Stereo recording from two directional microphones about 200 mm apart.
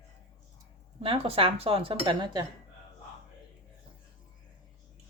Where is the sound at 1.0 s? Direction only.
30° right (ahead or behind).